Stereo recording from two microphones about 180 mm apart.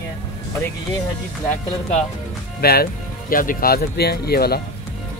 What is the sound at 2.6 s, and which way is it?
Speech, 60° left (ahead or behind).